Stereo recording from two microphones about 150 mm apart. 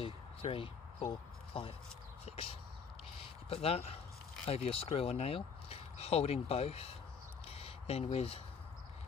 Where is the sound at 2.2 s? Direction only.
40° left (ahead or behind).